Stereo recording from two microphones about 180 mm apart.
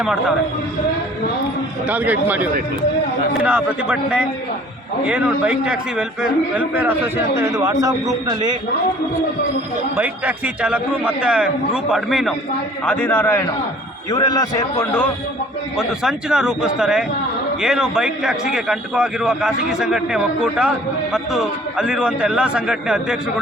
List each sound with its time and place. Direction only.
0.0 s a man's voice: centre (ahead or behind)
1.9 s a man's voice: 10° right (ahead or behind)
9.9 s a man's voice: 10° right (ahead or behind); by 15.0 s 15° left (ahead or behind)
15.8 s a man's voice: 5° right (ahead or behind)